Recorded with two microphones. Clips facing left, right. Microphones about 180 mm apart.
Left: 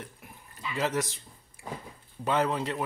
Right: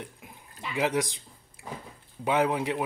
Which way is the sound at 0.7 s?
15° right (ahead or behind).